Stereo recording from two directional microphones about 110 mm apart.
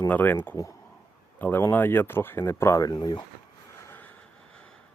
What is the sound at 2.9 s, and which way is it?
Speech, 45° left (ahead or behind).